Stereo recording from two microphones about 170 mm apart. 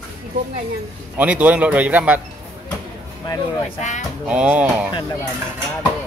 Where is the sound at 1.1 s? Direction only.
10° right (ahead or behind).